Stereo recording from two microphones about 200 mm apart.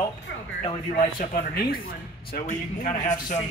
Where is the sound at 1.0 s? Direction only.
45° left (ahead or behind).